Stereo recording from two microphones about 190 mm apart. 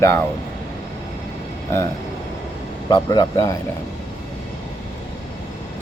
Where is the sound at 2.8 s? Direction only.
25° left (ahead or behind).